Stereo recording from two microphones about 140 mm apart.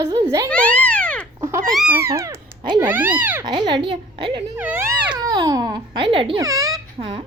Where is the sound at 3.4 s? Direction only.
30° right (ahead or behind).